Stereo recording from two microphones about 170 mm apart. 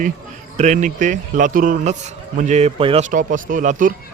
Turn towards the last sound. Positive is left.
turn(degrees=-50)  # may be behind; listen again after turning